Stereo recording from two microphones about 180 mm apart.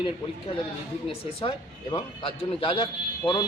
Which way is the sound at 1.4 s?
30° left (ahead or behind).